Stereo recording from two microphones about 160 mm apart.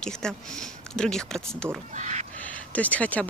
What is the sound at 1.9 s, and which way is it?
Speech, 50° right (ahead or behind).